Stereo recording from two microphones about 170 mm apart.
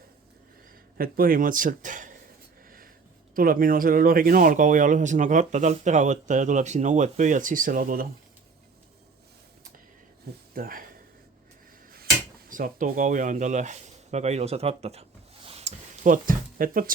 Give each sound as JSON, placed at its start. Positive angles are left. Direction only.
{"t": 0.9, "sound": "a man's voice", "side_deg": -60}
{"t": 2.6, "sound": "writing", "side_deg": -55}
{"t": 3.3, "sound": "speech", "side_deg": -55}
{"t": 10.5, "sound": "speech", "side_deg": -55}
{"t": 12.5, "sound": "speech", "side_deg": -50}
{"t": 15.4, "sound": "a sound", "side_deg": -40}